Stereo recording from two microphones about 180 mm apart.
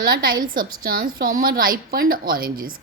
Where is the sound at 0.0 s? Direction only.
55° right (ahead or behind).